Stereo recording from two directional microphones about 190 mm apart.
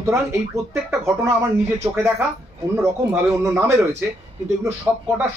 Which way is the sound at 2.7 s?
10° right (ahead or behind).